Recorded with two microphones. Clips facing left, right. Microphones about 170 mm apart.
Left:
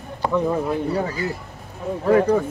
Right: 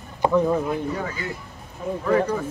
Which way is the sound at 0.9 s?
35° left (ahead or behind).